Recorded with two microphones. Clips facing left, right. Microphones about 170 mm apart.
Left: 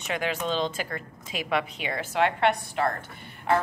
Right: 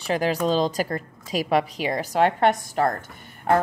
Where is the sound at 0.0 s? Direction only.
35° right (ahead or behind).